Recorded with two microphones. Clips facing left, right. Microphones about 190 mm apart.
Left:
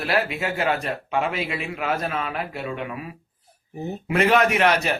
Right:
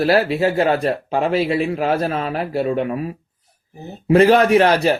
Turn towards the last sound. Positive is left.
turn(degrees=-35)  # may be behind; listen again after turning